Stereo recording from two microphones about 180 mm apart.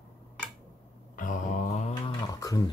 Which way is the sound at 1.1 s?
45° left (ahead or behind).